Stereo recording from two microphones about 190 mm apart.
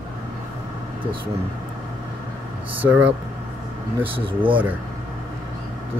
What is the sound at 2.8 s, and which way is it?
Speech, 10° right (ahead or behind).